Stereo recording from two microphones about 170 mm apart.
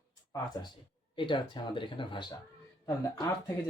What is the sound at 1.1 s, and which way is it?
Speech, 30° left (ahead or behind).